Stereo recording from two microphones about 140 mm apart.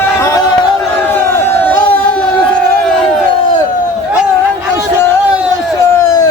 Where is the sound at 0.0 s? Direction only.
20° left (ahead or behind).